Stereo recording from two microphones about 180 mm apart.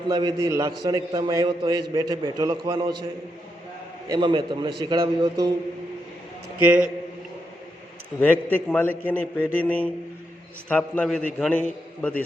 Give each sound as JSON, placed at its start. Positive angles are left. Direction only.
{"t": 0.1, "sound": "a man's voice", "side_deg": -25}
{"t": 4.1, "sound": "a man's voice", "side_deg": -25}
{"t": 6.6, "sound": "a man's voice", "side_deg": -10}
{"t": 8.2, "sound": "a man's voice", "side_deg": 10}